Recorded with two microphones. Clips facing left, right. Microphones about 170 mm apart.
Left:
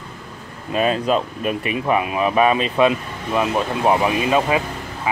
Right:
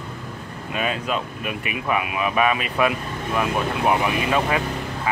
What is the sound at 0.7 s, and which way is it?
Speech, 35° left (ahead or behind).